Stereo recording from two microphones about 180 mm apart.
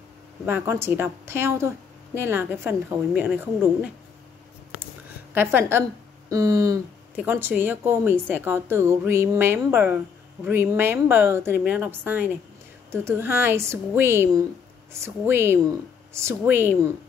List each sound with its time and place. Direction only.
0.5 s a woman's voice: 10° right (ahead or behind)
5.3 s a woman's voice: 10° right (ahead or behind)